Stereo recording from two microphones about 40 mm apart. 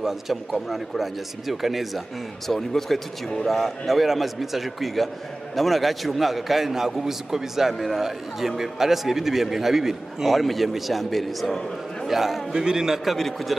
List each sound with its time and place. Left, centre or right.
0.0 s a man's voice: centre
2.5 s speech: centre
3.4 s a man's voice: centre
10.3 s a man's voice: centre
12.1 s a man's voice: centre
13.1 s a man's voice: centre